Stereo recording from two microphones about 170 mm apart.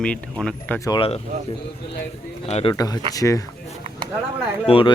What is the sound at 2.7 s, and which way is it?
Speech, 20° left (ahead or behind).